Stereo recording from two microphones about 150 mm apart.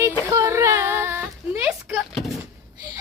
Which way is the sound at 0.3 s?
20° right (ahead or behind).